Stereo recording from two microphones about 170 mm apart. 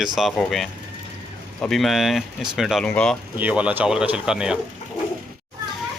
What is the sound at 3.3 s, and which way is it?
Speech, 10° right (ahead or behind).